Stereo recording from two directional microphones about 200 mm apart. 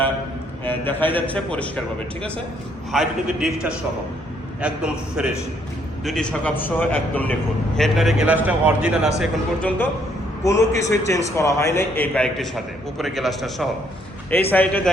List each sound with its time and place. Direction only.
0.6 s a man's voice: 10° left (ahead or behind)
2.9 s a man's voice: centre (ahead or behind)